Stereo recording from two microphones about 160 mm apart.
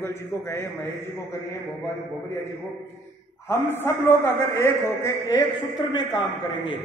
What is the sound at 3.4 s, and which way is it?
A man's voice, 15° left (ahead or behind).